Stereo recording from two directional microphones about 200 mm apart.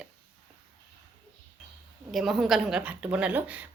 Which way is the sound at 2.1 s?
Centre (ahead or behind).